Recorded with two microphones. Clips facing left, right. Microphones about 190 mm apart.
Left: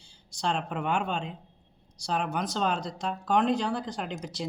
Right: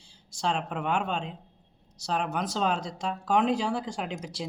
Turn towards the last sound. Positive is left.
turn(degrees=0)  # may be behind; listen again after turning